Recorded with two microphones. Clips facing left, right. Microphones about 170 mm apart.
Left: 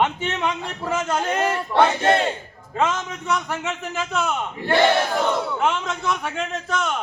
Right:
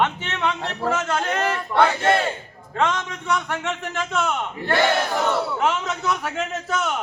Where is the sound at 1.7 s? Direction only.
20° left (ahead or behind).